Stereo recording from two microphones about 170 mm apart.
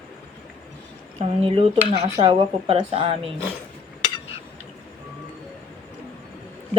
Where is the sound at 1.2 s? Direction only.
35° right (ahead or behind).